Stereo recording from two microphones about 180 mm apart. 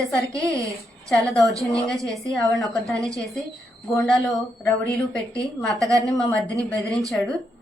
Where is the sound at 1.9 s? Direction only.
20° right (ahead or behind).